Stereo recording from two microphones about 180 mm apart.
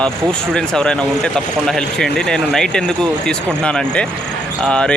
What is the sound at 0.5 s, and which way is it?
Speech, 5° left (ahead or behind).